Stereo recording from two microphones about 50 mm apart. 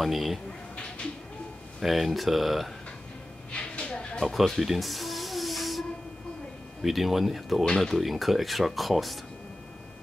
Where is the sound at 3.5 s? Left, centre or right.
Left.